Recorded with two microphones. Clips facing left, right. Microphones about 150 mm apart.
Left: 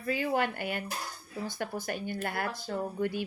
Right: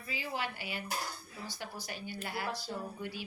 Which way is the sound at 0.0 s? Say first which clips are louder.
Left 9 dB; 55° left (ahead or behind).